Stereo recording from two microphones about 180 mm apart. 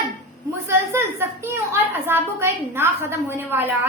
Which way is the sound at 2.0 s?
15° right (ahead or behind).